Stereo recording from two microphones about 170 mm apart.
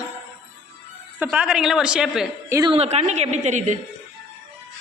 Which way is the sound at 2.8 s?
40° right (ahead or behind).